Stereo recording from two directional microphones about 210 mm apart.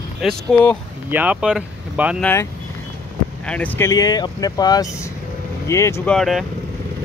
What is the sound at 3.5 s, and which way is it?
Speech, 10° left (ahead or behind).